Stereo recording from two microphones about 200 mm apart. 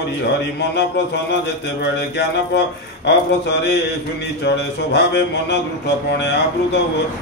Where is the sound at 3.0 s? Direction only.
55° left (ahead or behind).